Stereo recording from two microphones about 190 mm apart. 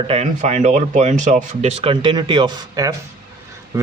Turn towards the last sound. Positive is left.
turn(degrees=-15)  # may be behind; listen again after turning